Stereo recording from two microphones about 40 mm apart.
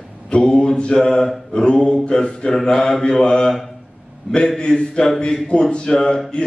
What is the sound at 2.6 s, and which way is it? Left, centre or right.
Mantra, centre.